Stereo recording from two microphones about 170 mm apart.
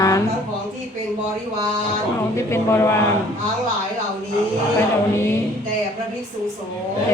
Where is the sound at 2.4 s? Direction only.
15° left (ahead or behind).